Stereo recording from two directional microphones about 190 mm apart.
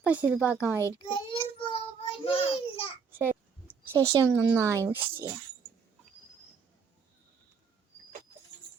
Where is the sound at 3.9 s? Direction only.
15° right (ahead or behind).